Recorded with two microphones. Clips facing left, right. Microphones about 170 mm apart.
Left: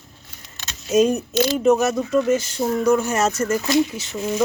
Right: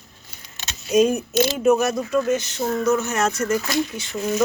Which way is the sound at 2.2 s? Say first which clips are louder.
Left 2 dB; 10° left (ahead or behind).